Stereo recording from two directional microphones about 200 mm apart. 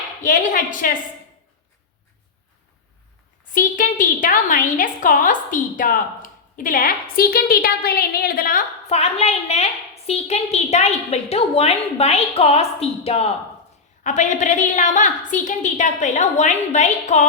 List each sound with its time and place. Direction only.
0.2 s a woman's voice: 40° left (ahead or behind)
3.5 s a woman's voice: 40° left (ahead or behind)
8.9 s a woman's voice: 30° left (ahead or behind)